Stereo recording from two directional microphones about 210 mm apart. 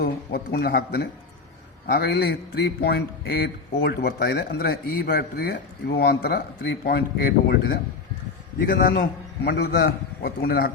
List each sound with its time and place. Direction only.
0.0 s speech: 45° left (ahead or behind)